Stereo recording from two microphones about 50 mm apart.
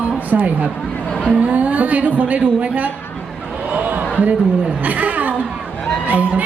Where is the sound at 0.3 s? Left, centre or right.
Right.